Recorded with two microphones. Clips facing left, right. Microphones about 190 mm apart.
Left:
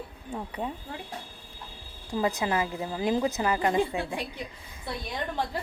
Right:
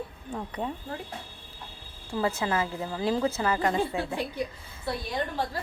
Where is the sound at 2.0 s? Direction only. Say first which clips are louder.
Left 1 dB; 15° left (ahead or behind).